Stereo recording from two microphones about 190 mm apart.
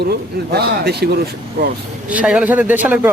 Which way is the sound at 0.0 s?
55° right (ahead or behind).